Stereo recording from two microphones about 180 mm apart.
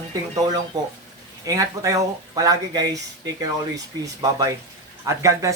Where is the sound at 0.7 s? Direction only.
20° right (ahead or behind).